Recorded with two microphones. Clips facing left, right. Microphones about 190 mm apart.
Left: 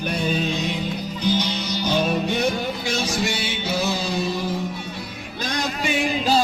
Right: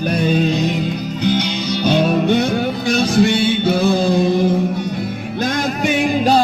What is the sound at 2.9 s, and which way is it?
Music, 60° right (ahead or behind).